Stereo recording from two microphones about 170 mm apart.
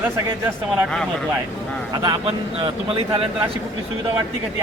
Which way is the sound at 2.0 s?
25° right (ahead or behind).